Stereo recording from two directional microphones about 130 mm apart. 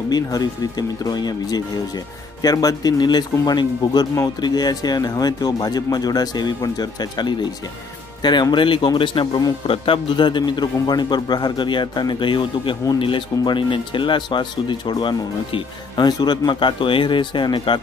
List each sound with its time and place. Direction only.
0.1 s speech: 30° left (ahead or behind)